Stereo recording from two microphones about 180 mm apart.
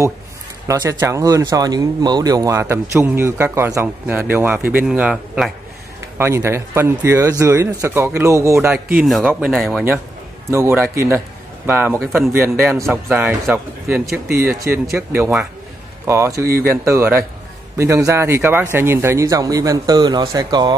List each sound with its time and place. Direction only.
0.7 s a man's voice: 20° right (ahead or behind); by 5.5 s 5° right (ahead or behind)
6.1 s speech: 15° right (ahead or behind)
8.9 s a man's voice: centre (ahead or behind)
10.5 s speech: 15° right (ahead or behind)